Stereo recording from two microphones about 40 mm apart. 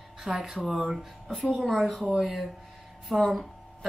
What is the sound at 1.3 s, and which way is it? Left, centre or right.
Speech, centre.